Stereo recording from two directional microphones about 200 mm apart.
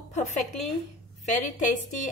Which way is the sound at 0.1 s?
35° left (ahead or behind).